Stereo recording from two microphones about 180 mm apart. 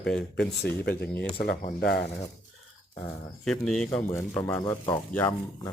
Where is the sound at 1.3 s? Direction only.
60° left (ahead or behind).